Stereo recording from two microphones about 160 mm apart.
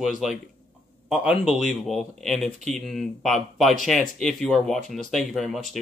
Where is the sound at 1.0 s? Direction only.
5° right (ahead or behind).